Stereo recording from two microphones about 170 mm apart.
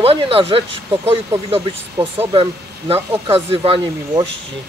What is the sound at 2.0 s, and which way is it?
Speech, 20° right (ahead or behind).